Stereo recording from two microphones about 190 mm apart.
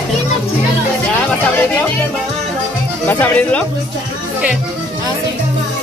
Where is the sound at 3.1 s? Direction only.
10° left (ahead or behind).